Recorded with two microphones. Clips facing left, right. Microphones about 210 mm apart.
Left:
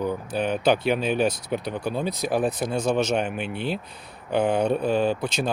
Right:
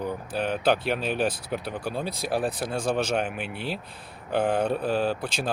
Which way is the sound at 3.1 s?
5° right (ahead or behind).